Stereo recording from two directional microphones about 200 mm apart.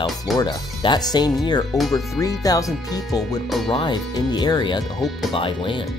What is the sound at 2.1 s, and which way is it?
Speech, 15° left (ahead or behind).